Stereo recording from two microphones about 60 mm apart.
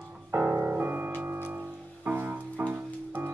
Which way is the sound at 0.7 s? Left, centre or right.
Right.